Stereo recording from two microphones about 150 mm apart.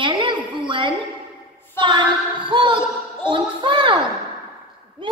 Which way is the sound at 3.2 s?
35° right (ahead or behind).